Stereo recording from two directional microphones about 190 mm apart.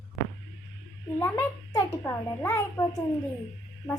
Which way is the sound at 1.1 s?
15° left (ahead or behind).